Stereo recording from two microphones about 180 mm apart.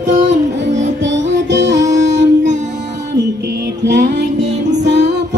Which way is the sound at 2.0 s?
80° right.